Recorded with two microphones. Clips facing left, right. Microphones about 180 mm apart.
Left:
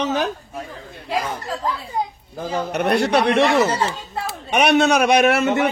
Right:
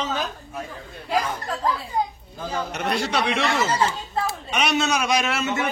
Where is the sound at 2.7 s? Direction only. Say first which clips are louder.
Left 8 dB; 60° left (ahead or behind).